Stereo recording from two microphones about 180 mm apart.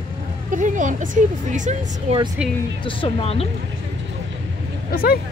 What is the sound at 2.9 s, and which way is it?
Speech, 30° left (ahead or behind).